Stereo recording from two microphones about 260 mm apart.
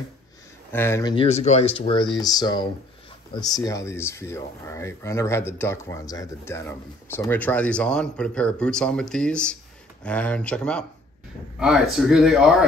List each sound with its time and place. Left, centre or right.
0.7 s speech: centre